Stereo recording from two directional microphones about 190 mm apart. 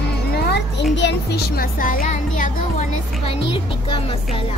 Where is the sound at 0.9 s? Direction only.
65° left (ahead or behind); by 3.3 s 40° left (ahead or behind).